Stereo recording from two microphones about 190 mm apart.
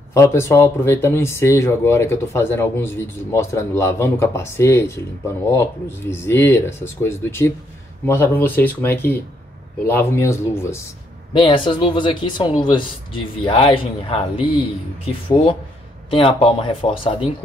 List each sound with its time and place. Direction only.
0.1 s speech: 15° left (ahead or behind)
11.3 s speech: 25° left (ahead or behind)
16.1 s speech: 25° left (ahead or behind)